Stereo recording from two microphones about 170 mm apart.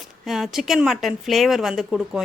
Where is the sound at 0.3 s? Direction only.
Centre (ahead or behind).